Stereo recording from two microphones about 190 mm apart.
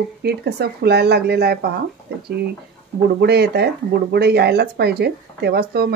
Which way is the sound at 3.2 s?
60° right (ahead or behind).